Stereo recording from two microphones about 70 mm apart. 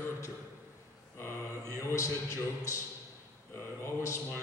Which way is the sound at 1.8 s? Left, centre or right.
Left.